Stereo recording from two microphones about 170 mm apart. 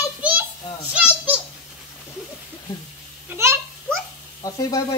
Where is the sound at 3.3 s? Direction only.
15° right (ahead or behind).